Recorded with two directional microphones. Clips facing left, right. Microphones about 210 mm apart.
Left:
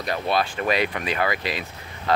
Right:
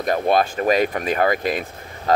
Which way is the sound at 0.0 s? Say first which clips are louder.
Right 6 dB; 45° right (ahead or behind).